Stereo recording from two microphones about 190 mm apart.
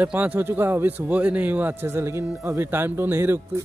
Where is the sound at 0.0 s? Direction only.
10° right (ahead or behind).